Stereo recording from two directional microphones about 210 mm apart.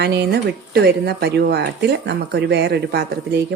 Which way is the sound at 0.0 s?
50° right (ahead or behind).